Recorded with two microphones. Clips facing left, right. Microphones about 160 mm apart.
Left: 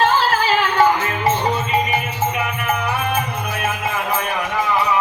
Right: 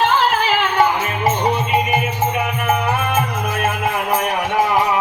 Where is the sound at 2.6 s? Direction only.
50° right (ahead or behind).